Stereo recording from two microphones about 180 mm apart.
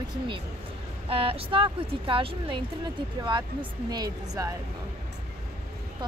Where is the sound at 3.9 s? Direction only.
20° right (ahead or behind).